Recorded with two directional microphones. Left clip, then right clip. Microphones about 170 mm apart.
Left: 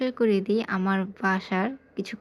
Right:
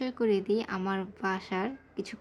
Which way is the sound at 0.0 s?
20° left (ahead or behind).